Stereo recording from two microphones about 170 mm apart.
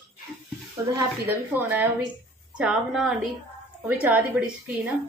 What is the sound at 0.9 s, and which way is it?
A woman's voice, 10° right (ahead or behind).